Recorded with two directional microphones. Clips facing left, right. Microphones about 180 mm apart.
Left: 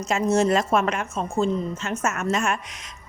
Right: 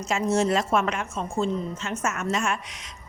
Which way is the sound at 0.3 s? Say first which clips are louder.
Left 2 dB; 45° left (ahead or behind).